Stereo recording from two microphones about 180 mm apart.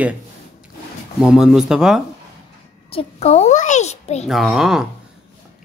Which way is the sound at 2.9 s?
35° left (ahead or behind).